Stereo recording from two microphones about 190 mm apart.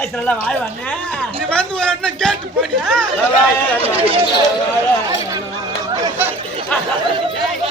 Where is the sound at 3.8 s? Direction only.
30° right (ahead or behind).